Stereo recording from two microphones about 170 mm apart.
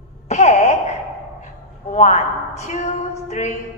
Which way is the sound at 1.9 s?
40° left (ahead or behind).